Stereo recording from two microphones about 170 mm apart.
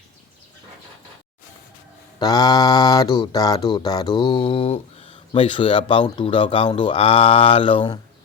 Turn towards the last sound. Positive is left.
turn(degrees=30)  # may be behind; listen again after turning